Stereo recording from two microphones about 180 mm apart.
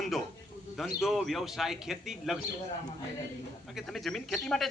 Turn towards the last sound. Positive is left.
turn(degrees=0)  # may be behind; listen again after turning